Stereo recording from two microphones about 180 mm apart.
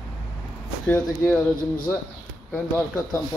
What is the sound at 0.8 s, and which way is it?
Speech, 5° left (ahead or behind).